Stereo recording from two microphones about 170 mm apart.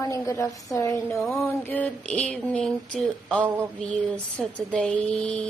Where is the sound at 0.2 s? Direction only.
20° left (ahead or behind).